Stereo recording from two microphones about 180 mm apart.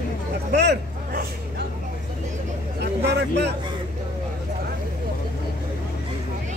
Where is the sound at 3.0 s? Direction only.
70° right (ahead or behind).